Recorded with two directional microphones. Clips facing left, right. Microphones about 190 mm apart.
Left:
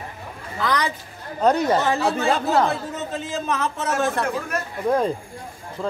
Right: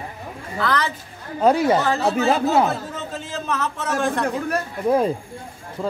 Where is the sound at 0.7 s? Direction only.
15° left (ahead or behind).